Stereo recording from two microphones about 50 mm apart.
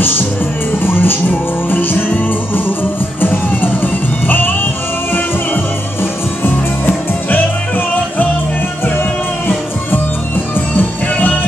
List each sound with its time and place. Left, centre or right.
0.8 s music: left
6.4 s music: left
10.8 s music: left